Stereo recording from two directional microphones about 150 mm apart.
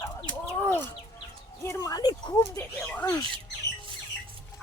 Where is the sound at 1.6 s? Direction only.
25° left (ahead or behind).